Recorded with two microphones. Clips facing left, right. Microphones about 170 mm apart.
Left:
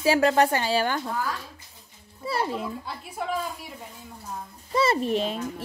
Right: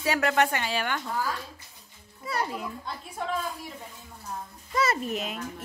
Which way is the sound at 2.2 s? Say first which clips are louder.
Left 3 dB; 30° left (ahead or behind).